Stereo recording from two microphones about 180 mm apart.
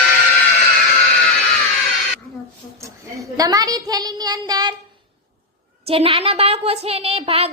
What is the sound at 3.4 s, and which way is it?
A woman's voice, 20° right (ahead or behind).